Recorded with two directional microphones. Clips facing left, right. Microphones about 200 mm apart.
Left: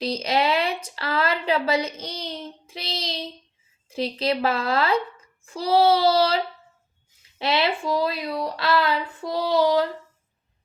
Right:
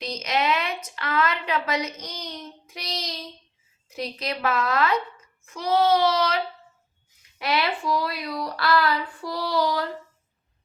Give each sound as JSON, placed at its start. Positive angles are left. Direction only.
{"t": 0.0, "sound": "a woman's voice", "side_deg": 30}
{"t": 5.5, "sound": "child singing", "side_deg": 30}
{"t": 7.3, "sound": "speech", "side_deg": 25}